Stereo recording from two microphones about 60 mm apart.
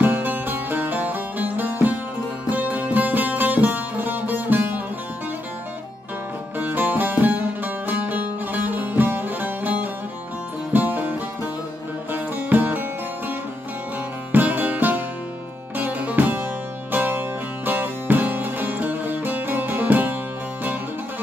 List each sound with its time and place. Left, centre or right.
0.0 s music: right
6.6 s music: right
14.3 s sitar: right
15.8 s music: right